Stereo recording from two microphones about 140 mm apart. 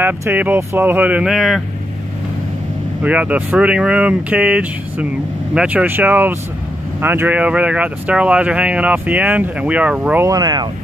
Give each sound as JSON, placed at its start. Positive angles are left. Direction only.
{"t": 0.0, "sound": "speech", "side_deg": -15}
{"t": 3.0, "sound": "speech", "side_deg": -10}
{"t": 10.2, "sound": "speech", "side_deg": -25}